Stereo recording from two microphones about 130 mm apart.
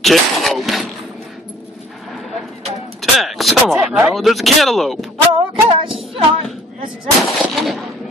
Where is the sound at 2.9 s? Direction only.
Centre (ahead or behind).